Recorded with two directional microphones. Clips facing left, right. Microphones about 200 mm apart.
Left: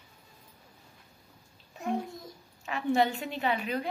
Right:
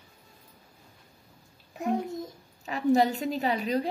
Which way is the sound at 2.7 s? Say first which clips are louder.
Right 4 dB; 40° right (ahead or behind).